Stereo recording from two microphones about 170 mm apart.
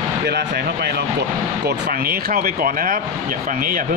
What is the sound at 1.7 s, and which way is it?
Speech, 60° right (ahead or behind).